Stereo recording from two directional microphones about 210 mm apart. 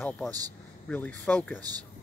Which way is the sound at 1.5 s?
15° right (ahead or behind).